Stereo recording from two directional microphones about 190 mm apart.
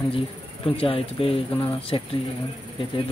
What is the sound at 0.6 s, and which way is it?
Speech, 30° left (ahead or behind).